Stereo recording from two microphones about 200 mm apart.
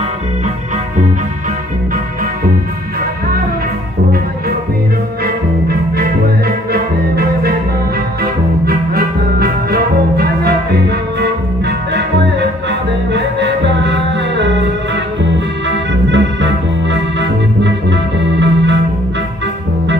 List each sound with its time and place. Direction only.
5.2 s music: 50° right (ahead or behind)
15.3 s organ: 60° right (ahead or behind)